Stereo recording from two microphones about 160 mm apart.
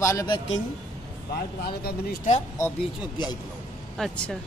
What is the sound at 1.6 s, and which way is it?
Speech, 75° left (ahead or behind).